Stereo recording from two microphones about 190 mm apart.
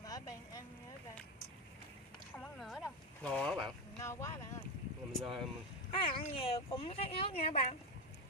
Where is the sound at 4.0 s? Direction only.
15° left (ahead or behind).